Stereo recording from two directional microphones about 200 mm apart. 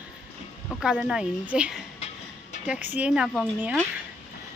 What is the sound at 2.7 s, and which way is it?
Speech, 10° right (ahead or behind).